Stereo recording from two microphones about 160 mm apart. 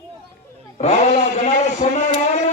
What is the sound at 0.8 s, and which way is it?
A man's voice, 45° left (ahead or behind).